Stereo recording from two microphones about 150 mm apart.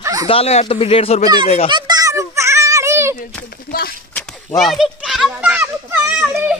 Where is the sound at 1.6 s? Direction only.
30° right (ahead or behind).